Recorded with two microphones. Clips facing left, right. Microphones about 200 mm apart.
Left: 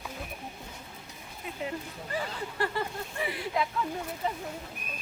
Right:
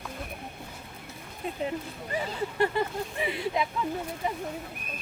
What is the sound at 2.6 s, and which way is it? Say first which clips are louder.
Speech: right 5 dB; 20° right (ahead or behind).